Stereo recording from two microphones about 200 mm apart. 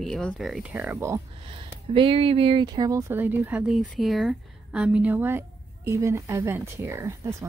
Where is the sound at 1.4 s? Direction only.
25° right (ahead or behind).